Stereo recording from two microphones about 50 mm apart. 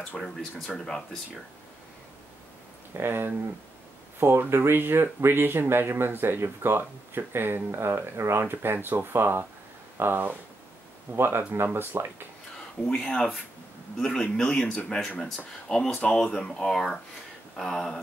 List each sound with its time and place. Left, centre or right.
0.2 s speech: centre
3.0 s speech: right
13.9 s speech: centre
15.0 s speech: centre